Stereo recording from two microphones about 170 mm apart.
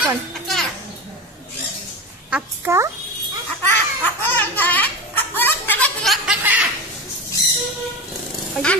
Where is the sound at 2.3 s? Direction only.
10° right (ahead or behind).